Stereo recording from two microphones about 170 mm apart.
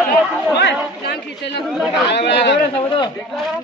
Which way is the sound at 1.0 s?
75° left (ahead or behind).